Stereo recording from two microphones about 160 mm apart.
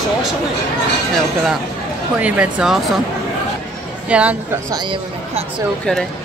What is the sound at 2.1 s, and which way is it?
Speech, 10° right (ahead or behind).